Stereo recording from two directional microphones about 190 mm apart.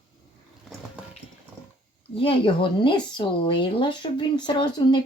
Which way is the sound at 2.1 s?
30° left (ahead or behind).